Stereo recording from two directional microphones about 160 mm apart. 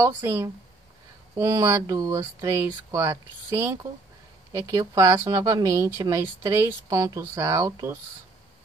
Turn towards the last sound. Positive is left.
turn(degrees=-20)  # may be behind; listen again after turning